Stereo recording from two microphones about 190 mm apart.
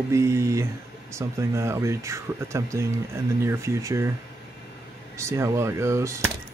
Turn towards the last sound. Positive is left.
turn(degrees=-15)  # may be behind; listen again after turning